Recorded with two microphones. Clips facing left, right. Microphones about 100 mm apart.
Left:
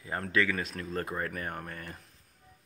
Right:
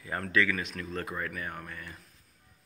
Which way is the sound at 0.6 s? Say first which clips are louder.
Left 1 dB; 35° left (ahead or behind).